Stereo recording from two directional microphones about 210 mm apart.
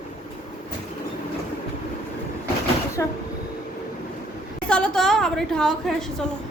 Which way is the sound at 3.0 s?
15° left (ahead or behind).